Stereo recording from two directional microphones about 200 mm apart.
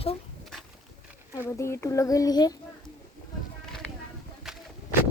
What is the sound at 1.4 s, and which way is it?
Speech, 15° left (ahead or behind).